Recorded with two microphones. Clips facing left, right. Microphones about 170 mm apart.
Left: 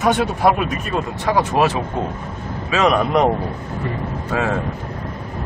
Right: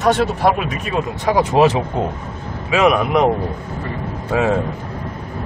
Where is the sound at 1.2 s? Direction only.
15° right (ahead or behind).